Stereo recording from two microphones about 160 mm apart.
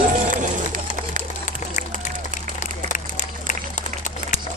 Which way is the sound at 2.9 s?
50° left (ahead or behind).